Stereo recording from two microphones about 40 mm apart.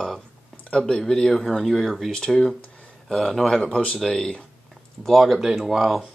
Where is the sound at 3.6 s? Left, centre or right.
Left.